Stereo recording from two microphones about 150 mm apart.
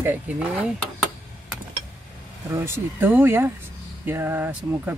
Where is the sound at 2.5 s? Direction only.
15° right (ahead or behind).